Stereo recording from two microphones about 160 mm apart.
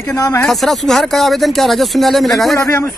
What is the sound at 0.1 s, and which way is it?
Speech, 20° left (ahead or behind).